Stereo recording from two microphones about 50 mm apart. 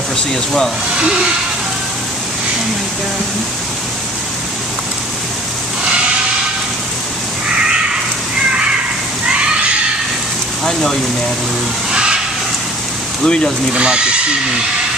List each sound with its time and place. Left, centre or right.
0.3 s speech: centre
0.9 s hiss: centre
10.6 s speech: centre
11.9 s a sound: centre
13.2 s speech: centre
13.7 s speech: centre